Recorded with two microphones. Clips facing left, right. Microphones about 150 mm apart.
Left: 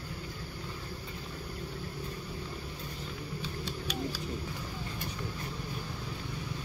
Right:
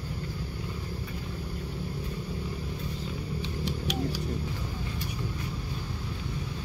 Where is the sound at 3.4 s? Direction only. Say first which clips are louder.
Right 5 dB; 20° right (ahead or behind).